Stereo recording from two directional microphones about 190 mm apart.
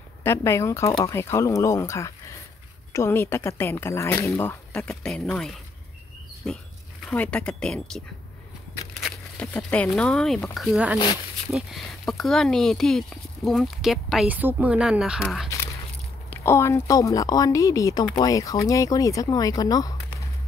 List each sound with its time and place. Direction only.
0.2 s a woman's voice: 15° left (ahead or behind)
9.0 s speech: 5° left (ahead or behind)
16.3 s a woman's voice: 15° left (ahead or behind)